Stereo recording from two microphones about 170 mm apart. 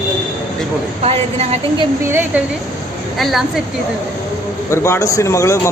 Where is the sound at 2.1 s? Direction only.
15° right (ahead or behind).